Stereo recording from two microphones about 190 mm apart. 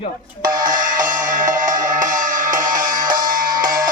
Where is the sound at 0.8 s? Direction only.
45° right (ahead or behind).